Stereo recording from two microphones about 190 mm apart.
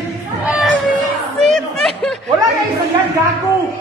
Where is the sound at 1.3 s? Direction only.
Centre (ahead or behind).